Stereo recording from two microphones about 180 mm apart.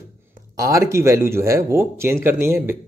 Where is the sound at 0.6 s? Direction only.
15° right (ahead or behind).